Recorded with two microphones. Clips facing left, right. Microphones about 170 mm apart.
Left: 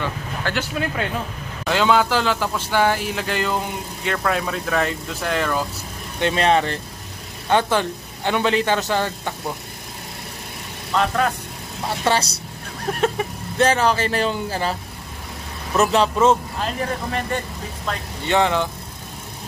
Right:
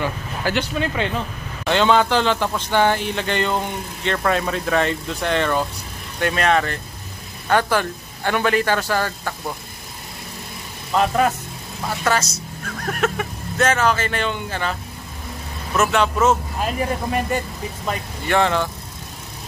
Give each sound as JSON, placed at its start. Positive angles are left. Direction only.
{"t": 0.0, "sound": "wind noise", "side_deg": -10}
{"t": 0.6, "sound": "speech", "side_deg": 5}
{"t": 6.1, "sound": "a man's voice", "side_deg": 25}
{"t": 10.9, "sound": "speech", "side_deg": -5}
{"t": 12.0, "sound": "a man's voice", "side_deg": 30}
{"t": 16.6, "sound": "speech", "side_deg": -10}
{"t": 18.2, "sound": "speech", "side_deg": 15}